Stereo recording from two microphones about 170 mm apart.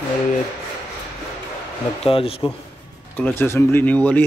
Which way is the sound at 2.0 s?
35° left (ahead or behind).